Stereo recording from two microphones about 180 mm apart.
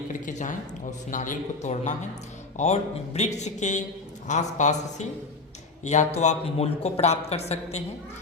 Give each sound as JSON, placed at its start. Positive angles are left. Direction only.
{"t": 0.1, "sound": "speech", "side_deg": 45}